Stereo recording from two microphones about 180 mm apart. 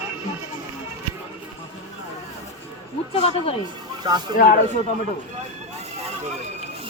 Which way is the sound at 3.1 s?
35° left (ahead or behind).